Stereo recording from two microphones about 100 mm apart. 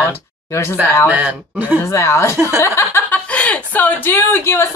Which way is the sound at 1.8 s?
30° left (ahead or behind).